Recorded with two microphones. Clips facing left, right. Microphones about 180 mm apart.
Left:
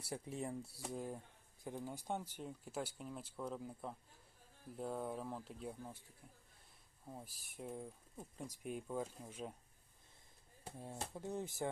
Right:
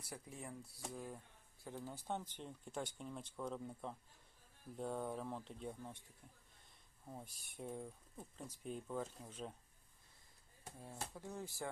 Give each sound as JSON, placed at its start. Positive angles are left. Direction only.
{"t": 0.0, "sound": "speech", "side_deg": 25}
{"t": 7.1, "sound": "speech", "side_deg": 0}
{"t": 11.1, "sound": "speech", "side_deg": 20}